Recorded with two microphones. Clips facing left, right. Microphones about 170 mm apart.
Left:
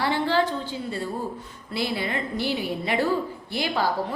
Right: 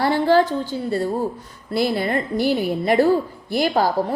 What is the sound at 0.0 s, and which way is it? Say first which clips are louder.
A woman's voice: right 6 dB; 45° right (ahead or behind).